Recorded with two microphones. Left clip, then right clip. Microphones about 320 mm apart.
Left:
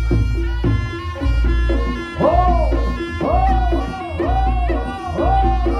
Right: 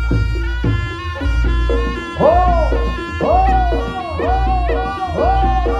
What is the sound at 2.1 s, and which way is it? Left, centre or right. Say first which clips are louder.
Music: right 3 dB; centre.